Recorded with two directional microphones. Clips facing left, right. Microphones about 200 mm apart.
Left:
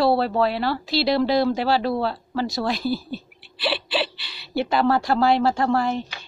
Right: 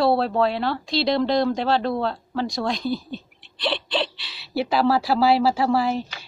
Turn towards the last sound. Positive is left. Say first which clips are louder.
# right 1 dB
turn(degrees=-5)  # may be behind; listen again after turning